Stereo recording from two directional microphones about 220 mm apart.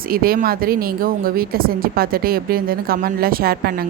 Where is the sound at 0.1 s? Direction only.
40° right (ahead or behind).